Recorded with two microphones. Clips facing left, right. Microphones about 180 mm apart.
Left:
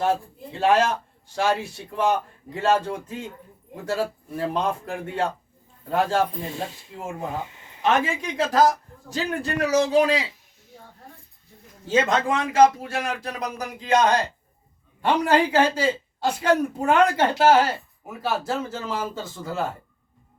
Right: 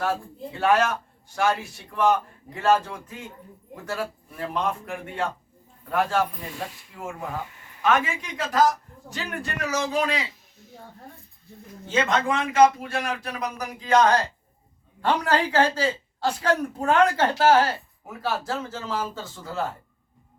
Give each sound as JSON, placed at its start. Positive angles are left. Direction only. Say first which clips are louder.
{"t": 0.0, "sound": "speech", "louder": "left 3 dB", "side_deg": 25}
{"t": 11.9, "sound": "speech", "louder": "left 2 dB", "side_deg": 35}
{"t": 13.8, "sound": "a man's voice", "louder": "even", "side_deg": 20}